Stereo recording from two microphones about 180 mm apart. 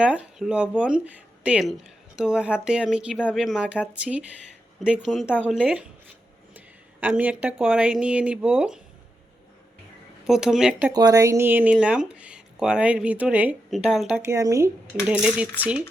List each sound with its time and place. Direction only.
0.0 s speech: 5° right (ahead or behind)
5.2 s speech: 10° left (ahead or behind)
7.0 s speech: 10° right (ahead or behind)
10.2 s speech: centre (ahead or behind)
10.9 s speech: 20° right (ahead or behind); by 14.2 s centre (ahead or behind)
14.2 s speech: 15° right (ahead or behind)
14.9 s speech: 5° right (ahead or behind)